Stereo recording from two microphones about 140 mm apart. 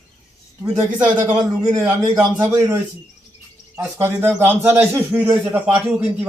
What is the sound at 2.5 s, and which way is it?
A man's voice, 20° right (ahead or behind).